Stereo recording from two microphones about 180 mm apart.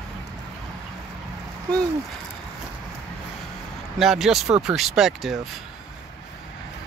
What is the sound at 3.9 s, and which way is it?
Speech, centre (ahead or behind).